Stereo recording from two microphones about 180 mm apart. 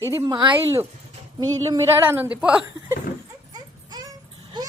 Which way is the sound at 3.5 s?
20° right (ahead or behind).